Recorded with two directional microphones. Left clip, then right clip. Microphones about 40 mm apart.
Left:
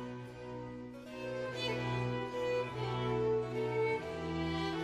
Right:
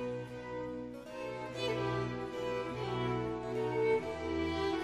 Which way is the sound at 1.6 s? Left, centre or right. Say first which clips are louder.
Right 6 dB; left.